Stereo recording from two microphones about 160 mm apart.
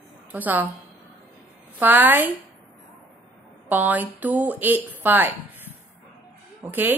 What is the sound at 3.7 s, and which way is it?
Speech, 10° right (ahead or behind).